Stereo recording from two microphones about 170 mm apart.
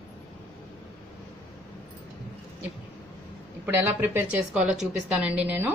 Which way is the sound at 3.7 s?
10° right (ahead or behind).